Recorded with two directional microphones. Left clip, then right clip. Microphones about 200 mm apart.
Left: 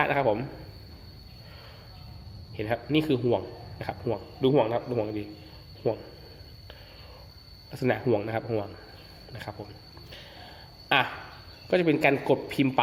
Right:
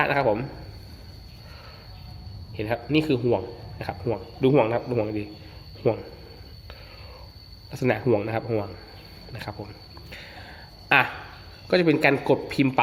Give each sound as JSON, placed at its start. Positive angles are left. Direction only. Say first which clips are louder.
{"t": 0.0, "sound": "speech", "louder": "right 3 dB", "side_deg": 0}
{"t": 2.6, "sound": "speech", "louder": "right 3 dB", "side_deg": 0}
{"t": 4.4, "sound": "speech", "louder": "right 3 dB", "side_deg": -15}
{"t": 5.8, "sound": "speech", "louder": "right 5 dB", "side_deg": -20}
{"t": 7.7, "sound": "speech", "louder": "right 3 dB", "side_deg": -5}
{"t": 10.1, "sound": "a sound", "louder": "right 4 dB", "side_deg": -10}
{"t": 11.7, "sound": "speech", "louder": "right 3 dB", "side_deg": -5}